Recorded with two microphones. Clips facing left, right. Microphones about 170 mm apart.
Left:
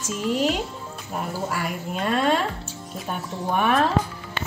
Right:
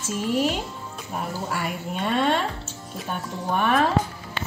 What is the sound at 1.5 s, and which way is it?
A woman's voice, centre (ahead or behind).